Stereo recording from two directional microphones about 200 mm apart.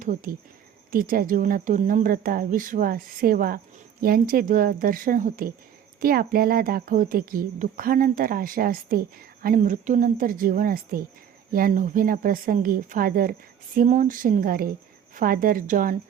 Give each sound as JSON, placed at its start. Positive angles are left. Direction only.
{"t": 0.0, "sound": "speech", "side_deg": -40}